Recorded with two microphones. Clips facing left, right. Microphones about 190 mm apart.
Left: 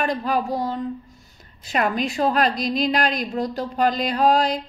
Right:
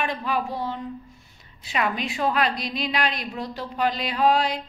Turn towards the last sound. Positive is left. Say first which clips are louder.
# left 3 dB
turn(degrees=40)  # may be behind; listen again after turning